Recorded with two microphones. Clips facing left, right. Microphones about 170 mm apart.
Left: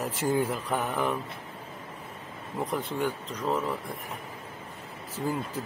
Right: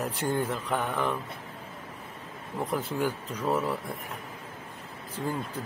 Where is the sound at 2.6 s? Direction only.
Centre (ahead or behind).